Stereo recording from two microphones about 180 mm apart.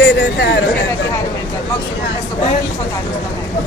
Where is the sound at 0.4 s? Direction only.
65° left (ahead or behind).